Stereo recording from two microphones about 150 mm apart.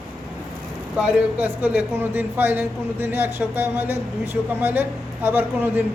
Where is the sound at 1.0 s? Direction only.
10° right (ahead or behind).